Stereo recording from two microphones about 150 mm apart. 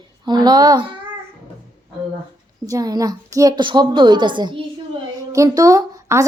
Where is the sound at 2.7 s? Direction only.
25° right (ahead or behind).